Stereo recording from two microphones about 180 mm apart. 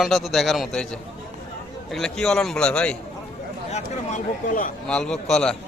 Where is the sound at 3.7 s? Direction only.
45° left (ahead or behind).